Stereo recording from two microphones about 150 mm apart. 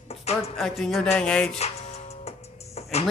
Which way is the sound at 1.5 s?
45° left (ahead or behind).